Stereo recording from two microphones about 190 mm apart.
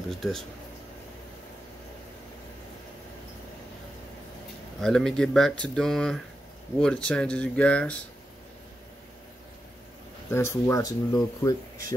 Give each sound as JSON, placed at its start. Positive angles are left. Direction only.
{"t": 0.1, "sound": "speech", "side_deg": 0}
{"t": 4.7, "sound": "speech", "side_deg": 0}
{"t": 10.3, "sound": "speech", "side_deg": 15}